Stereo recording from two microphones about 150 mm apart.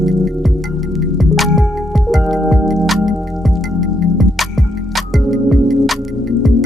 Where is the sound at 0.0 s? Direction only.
Centre (ahead or behind).